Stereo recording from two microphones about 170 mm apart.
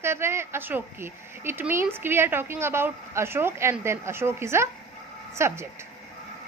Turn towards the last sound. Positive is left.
turn(degrees=-15)  # may be behind; listen again after turning